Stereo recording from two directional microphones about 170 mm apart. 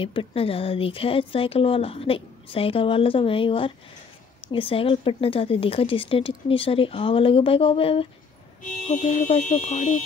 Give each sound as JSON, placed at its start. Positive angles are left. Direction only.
{"t": 0.0, "sound": "speech", "side_deg": 30}